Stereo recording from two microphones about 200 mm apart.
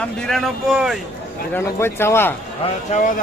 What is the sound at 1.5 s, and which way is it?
Speech, 10° left (ahead or behind).